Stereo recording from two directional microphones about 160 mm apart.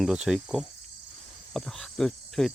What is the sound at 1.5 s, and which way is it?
Speech, 5° left (ahead or behind).